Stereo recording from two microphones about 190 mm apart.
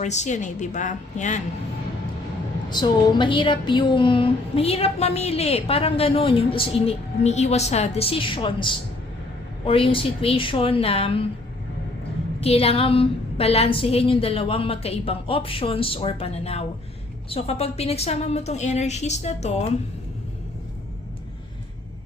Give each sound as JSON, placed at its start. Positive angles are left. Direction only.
{"t": 0.0, "sound": "a woman's voice", "side_deg": 35}
{"t": 2.6, "sound": "a woman's voice", "side_deg": 25}
{"t": 12.4, "sound": "a woman's voice", "side_deg": 30}